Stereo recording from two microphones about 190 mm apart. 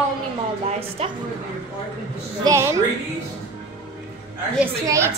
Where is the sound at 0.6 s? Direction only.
30° right (ahead or behind).